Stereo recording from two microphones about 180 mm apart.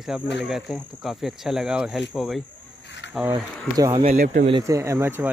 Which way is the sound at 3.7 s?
20° right (ahead or behind).